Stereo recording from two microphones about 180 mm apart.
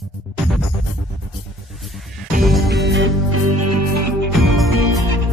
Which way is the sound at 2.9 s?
90° right.